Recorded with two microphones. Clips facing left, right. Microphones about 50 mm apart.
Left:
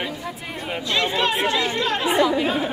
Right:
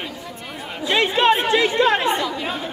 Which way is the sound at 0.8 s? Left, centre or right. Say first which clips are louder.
Right 6 dB; right.